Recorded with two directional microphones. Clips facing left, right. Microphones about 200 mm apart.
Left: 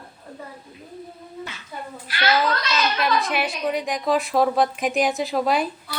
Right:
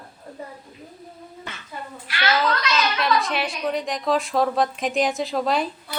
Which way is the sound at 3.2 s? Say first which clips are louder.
Left 1 dB; 5° left (ahead or behind).